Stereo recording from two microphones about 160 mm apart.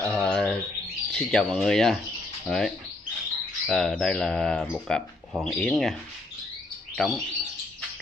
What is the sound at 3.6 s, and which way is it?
Speech, 5° left (ahead or behind).